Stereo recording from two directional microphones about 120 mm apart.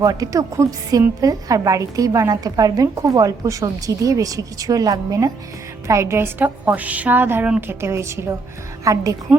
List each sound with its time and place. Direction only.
0.0 s a woman's voice: 30° right (ahead or behind)